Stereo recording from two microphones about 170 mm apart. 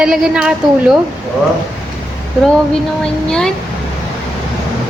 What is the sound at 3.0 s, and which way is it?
Speech, 5° left (ahead or behind).